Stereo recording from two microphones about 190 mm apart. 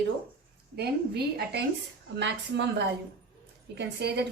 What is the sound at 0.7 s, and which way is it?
A woman's voice, 60° right (ahead or behind).